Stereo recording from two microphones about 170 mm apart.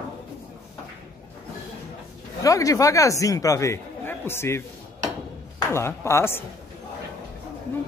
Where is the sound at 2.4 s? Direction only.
20° left (ahead or behind).